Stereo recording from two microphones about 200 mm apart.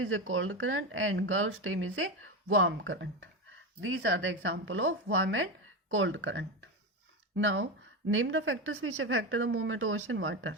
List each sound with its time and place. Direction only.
0.0 s speech: 80° right